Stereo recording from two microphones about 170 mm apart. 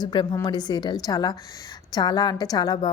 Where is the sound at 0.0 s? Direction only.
25° left (ahead or behind).